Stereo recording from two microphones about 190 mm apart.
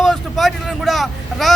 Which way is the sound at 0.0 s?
Centre (ahead or behind).